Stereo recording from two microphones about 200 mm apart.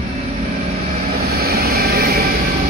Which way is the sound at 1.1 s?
50° right (ahead or behind).